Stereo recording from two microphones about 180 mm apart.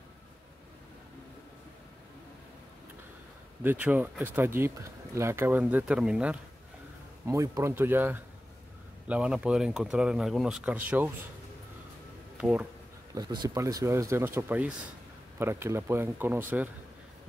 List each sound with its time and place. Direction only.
3.6 s speech: 10° right (ahead or behind)
7.2 s speech: 15° right (ahead or behind)
12.4 s speech: 5° right (ahead or behind)
13.1 s speech: 20° right (ahead or behind)